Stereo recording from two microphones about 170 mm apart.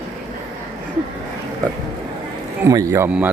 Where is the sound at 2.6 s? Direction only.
20° right (ahead or behind).